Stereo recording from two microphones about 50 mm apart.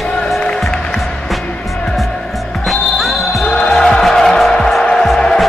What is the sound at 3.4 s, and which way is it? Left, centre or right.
Music, centre.